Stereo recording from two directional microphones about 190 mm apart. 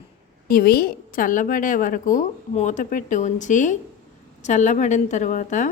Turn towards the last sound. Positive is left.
turn(degrees=40)  # may be behind; listen again after turning